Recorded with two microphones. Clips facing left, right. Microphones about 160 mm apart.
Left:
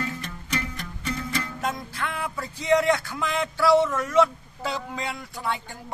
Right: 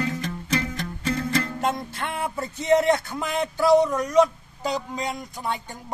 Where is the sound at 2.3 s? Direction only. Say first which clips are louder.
Right 2 dB; 25° right (ahead or behind).